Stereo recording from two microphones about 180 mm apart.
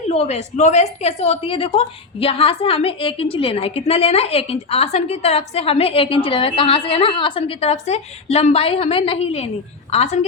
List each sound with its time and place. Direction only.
0.1 s a woman's voice: 35° left (ahead or behind)